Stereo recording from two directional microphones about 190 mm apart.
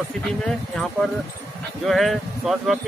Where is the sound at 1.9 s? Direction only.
Centre (ahead or behind).